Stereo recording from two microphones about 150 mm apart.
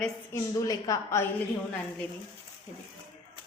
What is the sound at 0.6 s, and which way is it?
Speech, 25° left (ahead or behind).